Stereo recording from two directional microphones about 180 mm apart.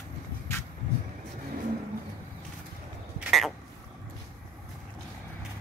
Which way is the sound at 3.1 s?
Centre (ahead or behind).